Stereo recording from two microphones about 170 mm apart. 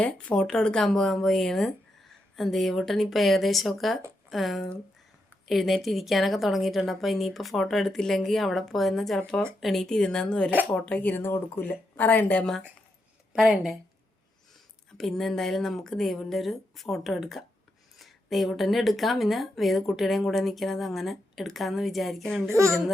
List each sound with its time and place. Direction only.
0.0 s speech: 5° left (ahead or behind)
14.9 s speech: centre (ahead or behind)
22.4 s a child's voice: 15° right (ahead or behind)